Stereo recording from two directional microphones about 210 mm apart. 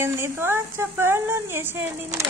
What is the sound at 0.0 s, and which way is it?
A woman's voice, 10° right (ahead or behind).